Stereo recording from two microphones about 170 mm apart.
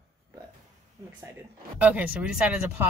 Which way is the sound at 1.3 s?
10° right (ahead or behind).